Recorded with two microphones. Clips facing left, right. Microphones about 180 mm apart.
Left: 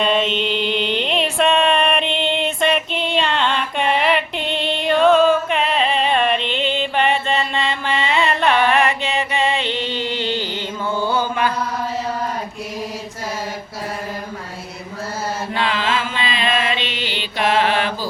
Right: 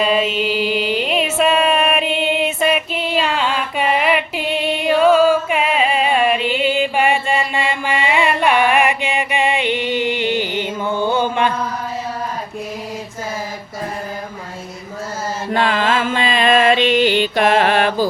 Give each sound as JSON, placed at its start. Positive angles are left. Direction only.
{"t": 0.0, "sound": "music", "side_deg": -5}
{"t": 15.5, "sound": "music", "side_deg": -50}